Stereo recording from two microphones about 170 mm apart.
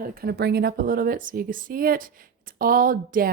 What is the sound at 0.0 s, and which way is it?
Speech, 60° right (ahead or behind).